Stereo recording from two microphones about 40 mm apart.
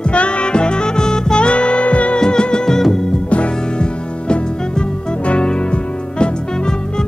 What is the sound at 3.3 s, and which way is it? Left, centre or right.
Music, left.